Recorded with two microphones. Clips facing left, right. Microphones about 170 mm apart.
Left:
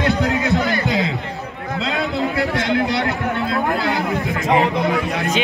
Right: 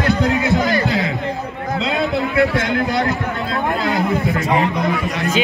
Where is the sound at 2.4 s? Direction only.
50° right (ahead or behind).